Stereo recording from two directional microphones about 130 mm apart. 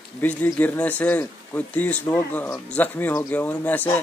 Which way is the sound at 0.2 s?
10° left (ahead or behind).